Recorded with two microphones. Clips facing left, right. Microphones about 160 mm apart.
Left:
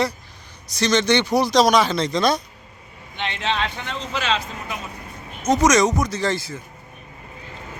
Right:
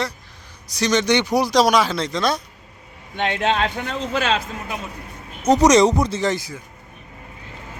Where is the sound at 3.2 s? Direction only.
50° right (ahead or behind).